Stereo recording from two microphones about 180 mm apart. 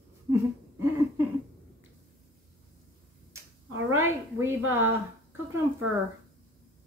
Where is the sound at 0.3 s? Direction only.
15° right (ahead or behind).